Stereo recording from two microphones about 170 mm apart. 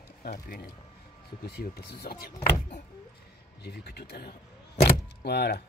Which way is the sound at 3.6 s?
70° left (ahead or behind).